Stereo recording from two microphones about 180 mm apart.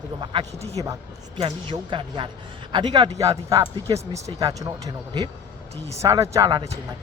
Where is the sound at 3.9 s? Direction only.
20° right (ahead or behind).